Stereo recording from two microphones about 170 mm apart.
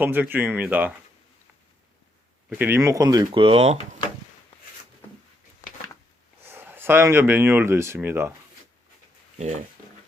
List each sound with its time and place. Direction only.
0.0 s speech: 10° right (ahead or behind)
2.5 s speech: 10° right (ahead or behind); by 3.8 s 35° right (ahead or behind)
6.5 s speech: 10° right (ahead or behind)
9.4 s speech: 45° right (ahead or behind)